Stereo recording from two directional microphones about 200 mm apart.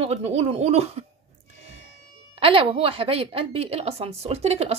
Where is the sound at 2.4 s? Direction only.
25° right (ahead or behind).